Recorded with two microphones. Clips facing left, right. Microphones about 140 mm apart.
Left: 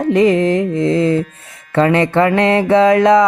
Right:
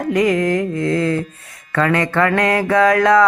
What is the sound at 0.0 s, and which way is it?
Mantra, 25° left (ahead or behind).